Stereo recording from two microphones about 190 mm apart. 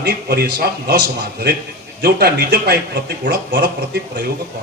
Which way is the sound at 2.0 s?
55° right (ahead or behind).